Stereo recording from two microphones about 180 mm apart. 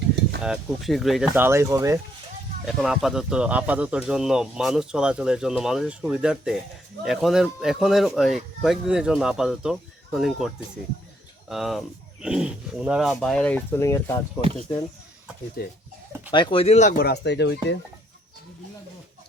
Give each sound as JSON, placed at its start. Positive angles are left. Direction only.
{"t": 0.4, "sound": "speech", "side_deg": 0}
{"t": 1.3, "sound": "speech", "side_deg": -15}
{"t": 2.6, "sound": "speech", "side_deg": 0}
{"t": 15.6, "sound": "speech", "side_deg": 55}
{"t": 16.3, "sound": "speech", "side_deg": 30}
{"t": 17.0, "sound": "speech", "side_deg": 65}